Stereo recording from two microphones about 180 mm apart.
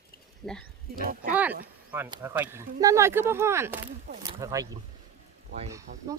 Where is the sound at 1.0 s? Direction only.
50° right (ahead or behind).